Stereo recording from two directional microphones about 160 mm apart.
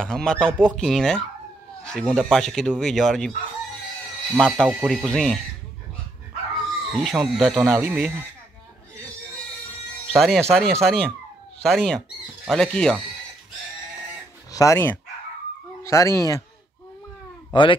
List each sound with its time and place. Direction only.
0.0 s speech: 5° left (ahead or behind)
4.4 s speech: 5° left (ahead or behind)
6.9 s speech: centre (ahead or behind)
10.0 s speech: centre (ahead or behind)
14.5 s speech: 20° left (ahead or behind)
17.5 s speech: 30° left (ahead or behind)